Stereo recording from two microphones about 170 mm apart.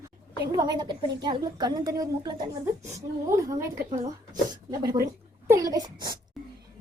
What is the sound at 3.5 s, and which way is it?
Speech, 45° right (ahead or behind).